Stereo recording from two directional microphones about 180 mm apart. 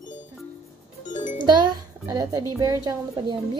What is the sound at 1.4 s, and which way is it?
A child's voice, 25° right (ahead or behind).